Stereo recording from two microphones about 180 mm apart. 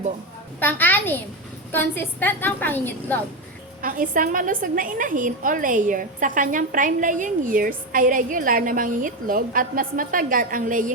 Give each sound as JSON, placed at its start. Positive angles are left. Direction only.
{"t": 0.6, "sound": "a woman's voice", "side_deg": 10}
{"t": 3.8, "sound": "a woman's voice", "side_deg": -50}